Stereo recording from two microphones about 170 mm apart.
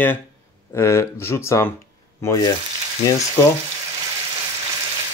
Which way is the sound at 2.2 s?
20° left (ahead or behind).